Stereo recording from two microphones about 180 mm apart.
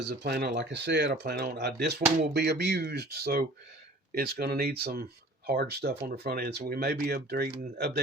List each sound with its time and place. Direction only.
0.0 s speech: 65° right (ahead or behind)